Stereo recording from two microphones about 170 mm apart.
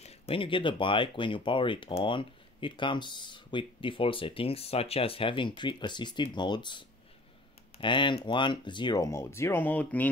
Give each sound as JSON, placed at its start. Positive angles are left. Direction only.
{"t": 0.0, "sound": "speech", "side_deg": 30}